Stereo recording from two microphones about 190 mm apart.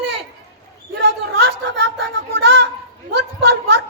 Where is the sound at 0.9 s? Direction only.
65° right (ahead or behind).